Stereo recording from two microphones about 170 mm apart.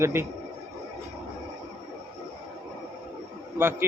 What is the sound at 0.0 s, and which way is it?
Speech, 15° right (ahead or behind).